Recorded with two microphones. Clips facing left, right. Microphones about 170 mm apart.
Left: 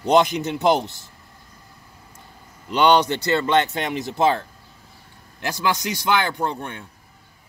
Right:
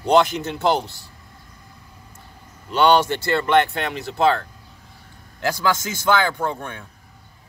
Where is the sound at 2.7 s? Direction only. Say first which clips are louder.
Even; 20° left (ahead or behind).